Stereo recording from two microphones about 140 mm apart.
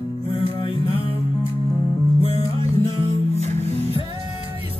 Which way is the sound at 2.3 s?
45° right (ahead or behind).